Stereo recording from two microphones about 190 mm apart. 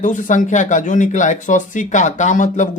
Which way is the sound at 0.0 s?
40° left (ahead or behind).